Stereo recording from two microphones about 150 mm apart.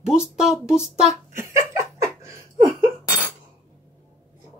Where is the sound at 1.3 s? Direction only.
20° right (ahead or behind).